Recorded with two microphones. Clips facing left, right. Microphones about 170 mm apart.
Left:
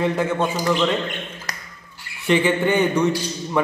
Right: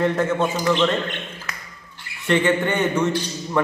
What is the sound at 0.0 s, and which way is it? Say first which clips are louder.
Speech: right 1 dB; 5° left (ahead or behind).